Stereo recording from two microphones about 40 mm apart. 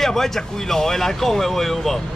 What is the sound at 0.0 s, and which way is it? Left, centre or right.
Speech, centre.